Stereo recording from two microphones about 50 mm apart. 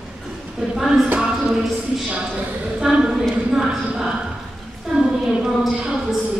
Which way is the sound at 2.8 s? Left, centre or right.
Centre.